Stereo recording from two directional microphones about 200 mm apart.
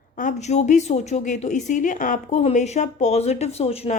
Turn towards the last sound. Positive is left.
turn(degrees=30)  # may be behind; listen again after turning